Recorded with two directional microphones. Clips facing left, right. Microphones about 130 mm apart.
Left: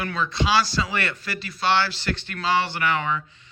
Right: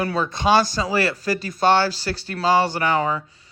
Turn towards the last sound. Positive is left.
turn(degrees=-35)  # may be behind; listen again after turning